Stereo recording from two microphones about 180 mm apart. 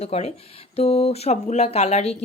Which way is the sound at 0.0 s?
35° left (ahead or behind).